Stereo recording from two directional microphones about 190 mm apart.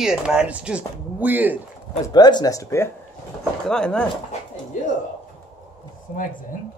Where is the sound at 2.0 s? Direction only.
20° left (ahead or behind).